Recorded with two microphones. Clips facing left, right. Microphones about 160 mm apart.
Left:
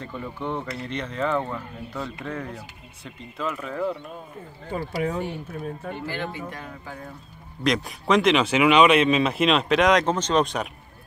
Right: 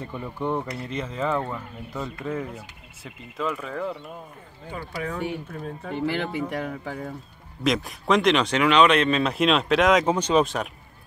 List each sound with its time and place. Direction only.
0.0 s speech: 10° right (ahead or behind)
5.5 s speech: 5° left (ahead or behind)
6.5 s speech: 70° right (ahead or behind)
7.6 s speech: centre (ahead or behind)